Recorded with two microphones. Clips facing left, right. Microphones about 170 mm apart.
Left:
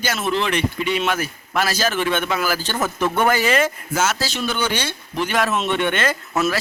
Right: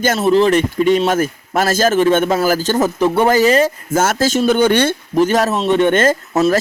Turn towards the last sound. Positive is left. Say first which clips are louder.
# right 7 dB
turn(degrees=-40)  # may be behind; listen again after turning